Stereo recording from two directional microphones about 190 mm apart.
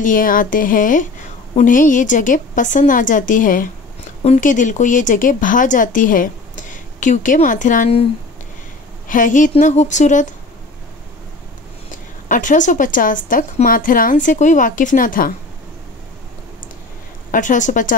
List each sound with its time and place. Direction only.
0.0 s speech: 45° left (ahead or behind)
9.0 s a woman's voice: 45° left (ahead or behind)
12.3 s speech: 45° left (ahead or behind)
17.3 s speech: 40° left (ahead or behind)